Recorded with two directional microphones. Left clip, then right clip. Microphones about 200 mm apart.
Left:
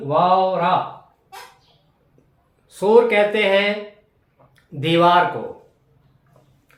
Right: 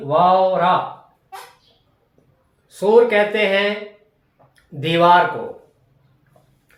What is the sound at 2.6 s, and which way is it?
Speech, 20° left (ahead or behind).